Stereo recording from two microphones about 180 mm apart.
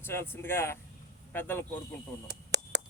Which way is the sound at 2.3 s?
70° right (ahead or behind).